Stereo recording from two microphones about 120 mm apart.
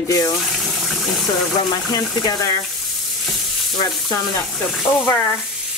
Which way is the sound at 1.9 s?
30° left (ahead or behind).